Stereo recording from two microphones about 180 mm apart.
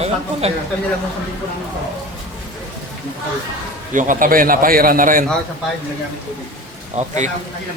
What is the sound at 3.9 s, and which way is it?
Speech, 45° right (ahead or behind).